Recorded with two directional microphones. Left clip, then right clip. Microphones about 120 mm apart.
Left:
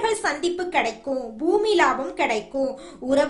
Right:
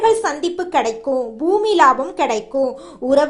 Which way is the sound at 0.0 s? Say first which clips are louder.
Right 7 dB; 25° right (ahead or behind).